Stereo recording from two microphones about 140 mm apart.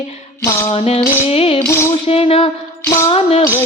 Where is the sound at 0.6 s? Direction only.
50° left (ahead or behind).